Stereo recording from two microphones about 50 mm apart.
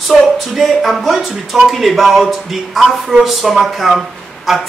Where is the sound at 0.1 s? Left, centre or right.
Centre.